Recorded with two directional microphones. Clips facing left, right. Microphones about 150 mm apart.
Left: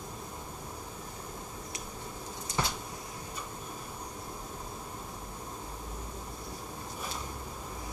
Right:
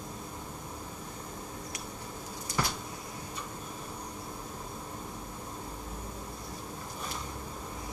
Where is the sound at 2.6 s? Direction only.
25° left (ahead or behind).